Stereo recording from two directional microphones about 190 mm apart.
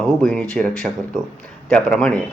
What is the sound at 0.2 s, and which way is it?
Speech, 5° left (ahead or behind).